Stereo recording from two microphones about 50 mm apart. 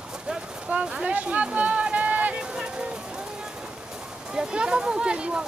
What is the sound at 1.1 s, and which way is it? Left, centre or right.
Run, right.